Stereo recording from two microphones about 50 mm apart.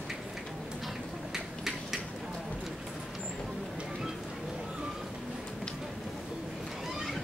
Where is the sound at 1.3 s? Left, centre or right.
Centre.